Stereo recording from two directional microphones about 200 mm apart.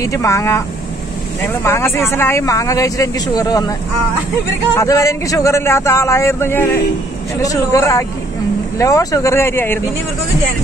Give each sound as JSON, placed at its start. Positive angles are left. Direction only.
{"t": 0.0, "sound": "speech", "side_deg": 15}
{"t": 4.7, "sound": "speech", "side_deg": 15}